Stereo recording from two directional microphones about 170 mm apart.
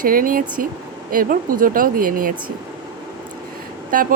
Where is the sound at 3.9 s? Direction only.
55° right (ahead or behind).